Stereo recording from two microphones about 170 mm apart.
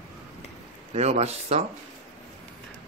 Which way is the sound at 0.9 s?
40° right (ahead or behind).